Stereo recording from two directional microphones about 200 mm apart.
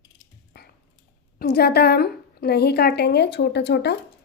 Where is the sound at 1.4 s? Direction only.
55° left (ahead or behind).